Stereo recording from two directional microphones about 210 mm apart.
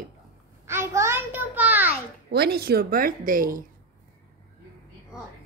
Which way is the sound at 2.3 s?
50° right (ahead or behind).